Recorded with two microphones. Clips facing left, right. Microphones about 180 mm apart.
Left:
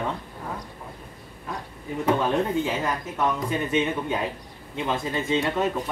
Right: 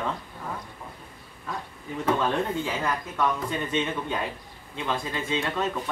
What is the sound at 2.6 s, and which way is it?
Speech, 20° left (ahead or behind).